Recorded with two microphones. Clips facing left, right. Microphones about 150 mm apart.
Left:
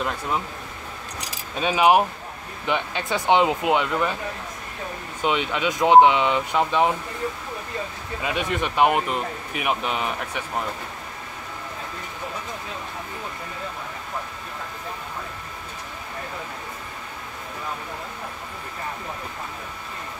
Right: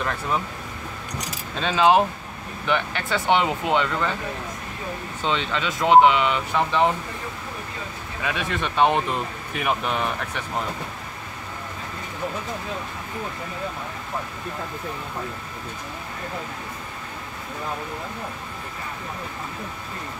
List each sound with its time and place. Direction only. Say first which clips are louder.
1.6 s speech: even; 10° left (ahead or behind)
5.2 s speech: left 2 dB; 15° left (ahead or behind)
8.2 s speech: left 1 dB; 20° left (ahead or behind)